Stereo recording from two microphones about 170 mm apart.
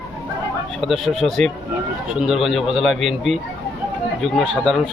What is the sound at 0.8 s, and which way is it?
Speech, centre (ahead or behind).